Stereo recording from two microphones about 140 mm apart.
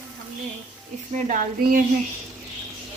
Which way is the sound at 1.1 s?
65° right (ahead or behind).